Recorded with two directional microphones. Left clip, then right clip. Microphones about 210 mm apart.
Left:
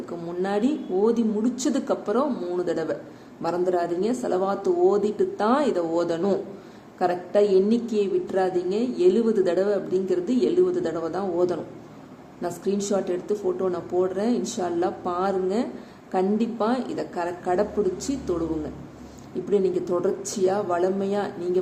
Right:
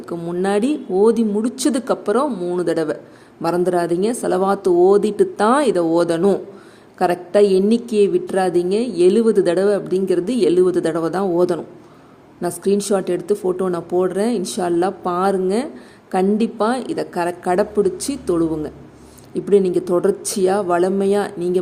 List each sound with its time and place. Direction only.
0.1 s a woman's voice: 45° right (ahead or behind)
19.5 s a woman's voice: 45° right (ahead or behind)